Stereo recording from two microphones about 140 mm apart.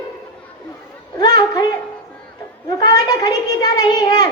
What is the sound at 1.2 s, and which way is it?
A child's voice, 30° left (ahead or behind).